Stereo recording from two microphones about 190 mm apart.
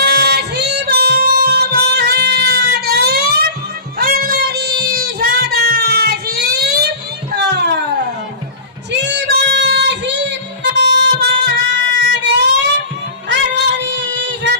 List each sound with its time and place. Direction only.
0.0 s music: 60° right (ahead or behind)
3.9 s child singing: 55° right (ahead or behind)
7.3 s a sound: 60° right (ahead or behind)
8.9 s female singing: 65° right (ahead or behind)
12.2 s a sound: 70° right (ahead or behind)
13.6 s child singing: 70° right (ahead or behind)